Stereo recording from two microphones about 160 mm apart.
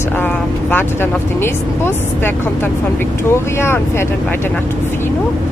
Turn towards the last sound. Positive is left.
turn(degrees=15)  # may be behind; listen again after turning